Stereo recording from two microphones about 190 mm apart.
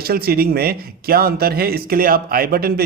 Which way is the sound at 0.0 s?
55° right (ahead or behind).